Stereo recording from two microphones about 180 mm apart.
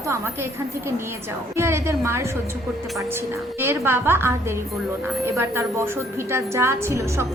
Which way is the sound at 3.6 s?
15° right (ahead or behind).